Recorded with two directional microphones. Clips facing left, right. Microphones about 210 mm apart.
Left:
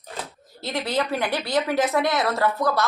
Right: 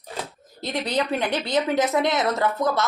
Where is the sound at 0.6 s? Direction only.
20° right (ahead or behind).